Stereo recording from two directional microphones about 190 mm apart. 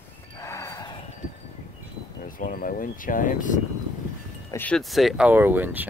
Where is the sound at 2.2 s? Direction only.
45° left (ahead or behind).